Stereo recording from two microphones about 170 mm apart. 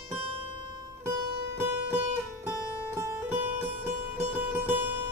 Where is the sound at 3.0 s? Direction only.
15° right (ahead or behind).